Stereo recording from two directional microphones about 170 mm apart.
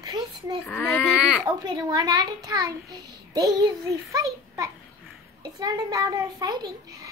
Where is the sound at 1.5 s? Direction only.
25° right (ahead or behind).